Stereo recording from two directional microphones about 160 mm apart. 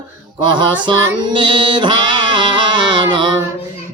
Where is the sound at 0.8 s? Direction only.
30° right (ahead or behind).